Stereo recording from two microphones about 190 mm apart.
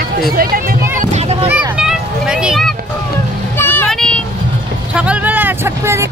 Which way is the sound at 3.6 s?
10° left (ahead or behind).